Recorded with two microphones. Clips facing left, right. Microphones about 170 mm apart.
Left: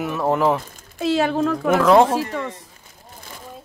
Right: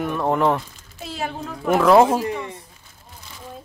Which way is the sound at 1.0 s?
90° left.